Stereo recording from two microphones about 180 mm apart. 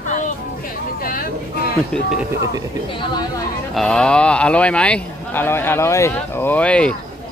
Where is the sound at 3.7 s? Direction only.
5° left (ahead or behind).